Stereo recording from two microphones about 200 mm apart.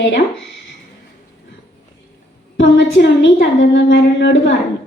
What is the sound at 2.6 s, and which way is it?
A woman's voice, 65° left (ahead or behind).